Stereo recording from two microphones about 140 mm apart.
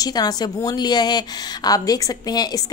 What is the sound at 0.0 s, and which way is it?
A woman's voice, 30° left (ahead or behind).